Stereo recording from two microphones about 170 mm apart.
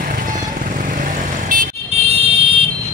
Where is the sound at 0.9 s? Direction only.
50° right (ahead or behind).